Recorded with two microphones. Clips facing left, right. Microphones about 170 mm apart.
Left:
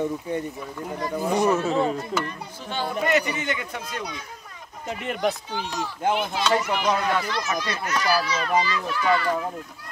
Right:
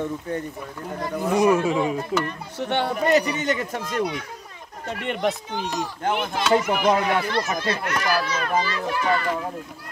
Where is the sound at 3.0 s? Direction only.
35° right (ahead or behind).